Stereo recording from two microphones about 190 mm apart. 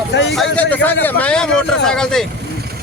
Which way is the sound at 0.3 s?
5° left (ahead or behind).